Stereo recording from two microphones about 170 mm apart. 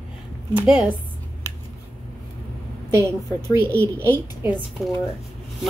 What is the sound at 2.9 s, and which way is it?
Speech, 15° right (ahead or behind).